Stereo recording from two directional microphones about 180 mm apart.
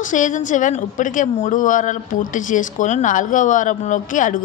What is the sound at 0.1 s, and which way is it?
A woman's voice, 45° left (ahead or behind).